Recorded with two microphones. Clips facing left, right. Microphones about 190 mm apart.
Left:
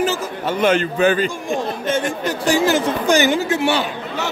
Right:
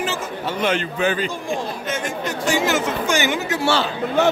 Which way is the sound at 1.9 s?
30° left (ahead or behind).